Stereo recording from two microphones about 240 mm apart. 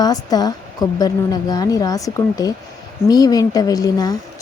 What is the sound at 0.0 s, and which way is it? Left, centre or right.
A woman's voice, centre.